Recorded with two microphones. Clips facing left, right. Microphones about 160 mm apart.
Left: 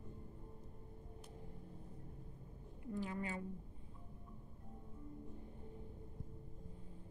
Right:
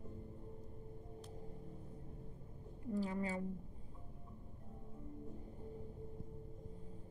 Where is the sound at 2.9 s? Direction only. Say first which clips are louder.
Right 3 dB; 35° right (ahead or behind).